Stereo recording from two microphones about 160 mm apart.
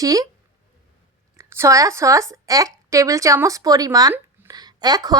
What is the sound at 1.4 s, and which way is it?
Speech, 15° right (ahead or behind).